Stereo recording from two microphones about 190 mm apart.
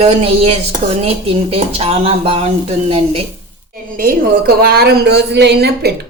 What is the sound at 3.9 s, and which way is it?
A woman's voice, 50° right (ahead or behind).